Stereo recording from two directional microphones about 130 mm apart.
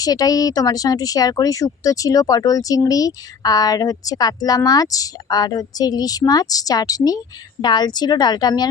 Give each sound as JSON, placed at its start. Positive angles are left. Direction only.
{"t": 0.0, "sound": "speech", "side_deg": 30}